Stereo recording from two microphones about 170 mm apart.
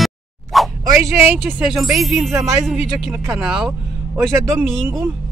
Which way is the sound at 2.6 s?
Centre (ahead or behind).